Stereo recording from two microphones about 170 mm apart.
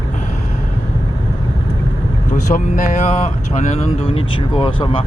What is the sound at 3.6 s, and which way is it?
Speech, 40° left (ahead or behind).